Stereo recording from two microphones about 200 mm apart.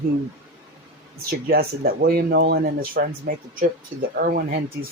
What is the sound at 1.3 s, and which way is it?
Speech, 50° right (ahead or behind).